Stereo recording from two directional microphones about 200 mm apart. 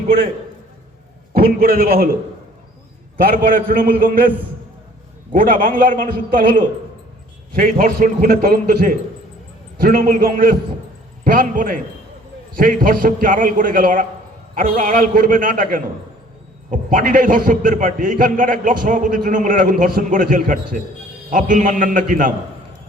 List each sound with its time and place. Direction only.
1.3 s a man's voice: 50° right (ahead or behind)
3.2 s a man's voice: 45° right (ahead or behind)
5.3 s a man's voice: 45° right (ahead or behind)